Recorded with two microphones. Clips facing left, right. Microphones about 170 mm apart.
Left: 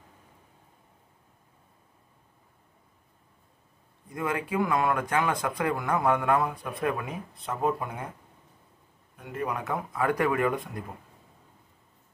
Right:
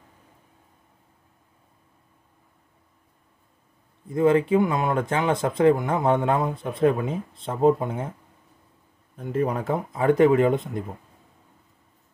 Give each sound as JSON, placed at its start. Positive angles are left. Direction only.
{"t": 4.1, "sound": "speech", "side_deg": -25}
{"t": 9.1, "sound": "speech", "side_deg": -30}